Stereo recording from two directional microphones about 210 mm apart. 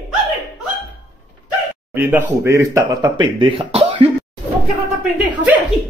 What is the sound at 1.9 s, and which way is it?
Speech, 10° right (ahead or behind).